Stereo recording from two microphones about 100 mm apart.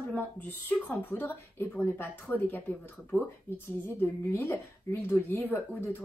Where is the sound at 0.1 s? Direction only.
15° left (ahead or behind).